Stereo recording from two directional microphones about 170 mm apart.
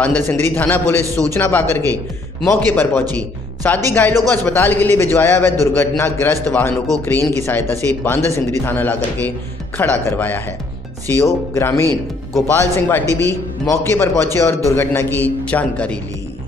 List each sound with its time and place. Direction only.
0.0 s a man's voice: 10° left (ahead or behind)
13.0 s a man's voice: 20° right (ahead or behind)
13.7 s a man's voice: 15° left (ahead or behind)